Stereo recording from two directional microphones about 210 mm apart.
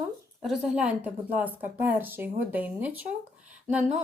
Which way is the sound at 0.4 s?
5° right (ahead or behind).